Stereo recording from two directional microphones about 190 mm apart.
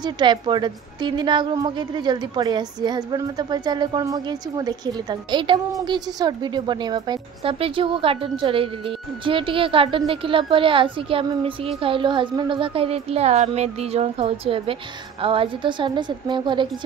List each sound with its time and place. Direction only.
0.0 s a woman's voice: 25° right (ahead or behind)